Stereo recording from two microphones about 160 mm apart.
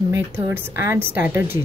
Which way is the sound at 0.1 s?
15° right (ahead or behind).